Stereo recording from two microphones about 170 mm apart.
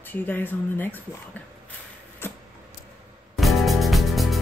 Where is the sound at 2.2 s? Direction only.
15° left (ahead or behind).